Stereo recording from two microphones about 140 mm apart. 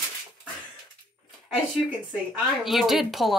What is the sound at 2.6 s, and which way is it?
Speech, centre (ahead or behind).